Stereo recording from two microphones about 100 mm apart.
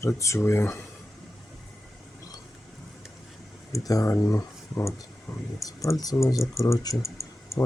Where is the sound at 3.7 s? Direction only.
35° left (ahead or behind).